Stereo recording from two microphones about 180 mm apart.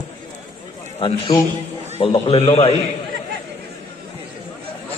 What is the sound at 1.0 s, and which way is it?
A man's voice, 25° left (ahead or behind).